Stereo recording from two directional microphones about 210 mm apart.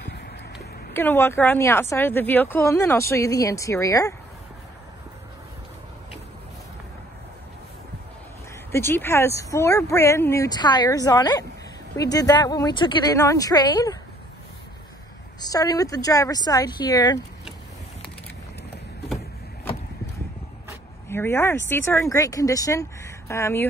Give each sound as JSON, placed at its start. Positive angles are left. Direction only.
{"t": 0.9, "sound": "speech", "side_deg": 10}
{"t": 8.7, "sound": "speech", "side_deg": 10}
{"t": 15.4, "sound": "speech", "side_deg": 15}
{"t": 21.1, "sound": "speech", "side_deg": 10}